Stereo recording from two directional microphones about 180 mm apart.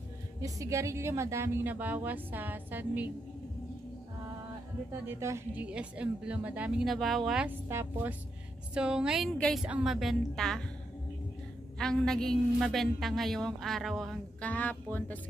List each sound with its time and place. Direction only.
0.4 s speech: 15° right (ahead or behind)
5.0 s a woman's voice: 15° right (ahead or behind); by 10.6 s centre (ahead or behind)
11.8 s a woman's voice: 5° left (ahead or behind)